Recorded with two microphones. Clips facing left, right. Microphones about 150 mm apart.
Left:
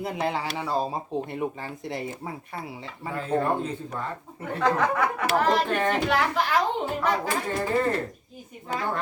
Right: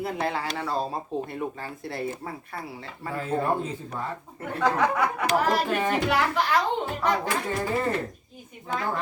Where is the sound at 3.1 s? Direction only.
5° right (ahead or behind).